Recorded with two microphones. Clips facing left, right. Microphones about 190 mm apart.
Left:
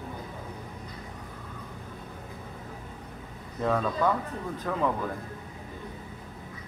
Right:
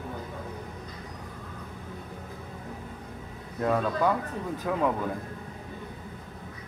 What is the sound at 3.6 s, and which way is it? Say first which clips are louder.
Speech: right 1 dB; 5° right (ahead or behind).